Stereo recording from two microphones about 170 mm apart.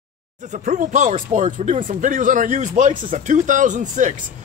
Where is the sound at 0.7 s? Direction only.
45° right (ahead or behind).